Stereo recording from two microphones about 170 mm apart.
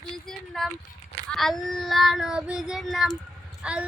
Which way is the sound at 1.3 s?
Centre (ahead or behind).